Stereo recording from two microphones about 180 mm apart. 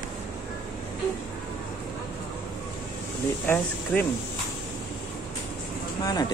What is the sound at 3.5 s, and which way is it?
Speech, 10° left (ahead or behind).